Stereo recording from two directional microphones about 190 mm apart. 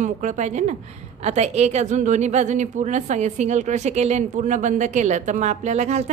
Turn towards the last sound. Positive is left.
turn(degrees=-35)  # may be behind; listen again after turning